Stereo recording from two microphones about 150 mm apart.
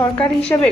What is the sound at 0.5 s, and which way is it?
Speech, 15° left (ahead or behind).